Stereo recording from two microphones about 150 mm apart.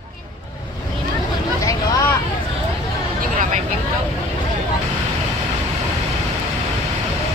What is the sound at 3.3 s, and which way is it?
Vehicle, 55° right (ahead or behind).